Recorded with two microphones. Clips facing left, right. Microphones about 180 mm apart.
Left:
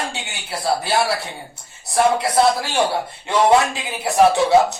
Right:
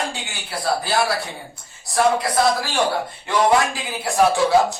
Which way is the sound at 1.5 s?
25° left (ahead or behind).